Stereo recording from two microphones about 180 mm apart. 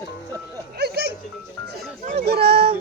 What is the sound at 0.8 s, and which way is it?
Music, 60° right (ahead or behind).